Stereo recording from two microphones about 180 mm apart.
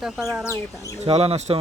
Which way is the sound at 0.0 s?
Centre (ahead or behind).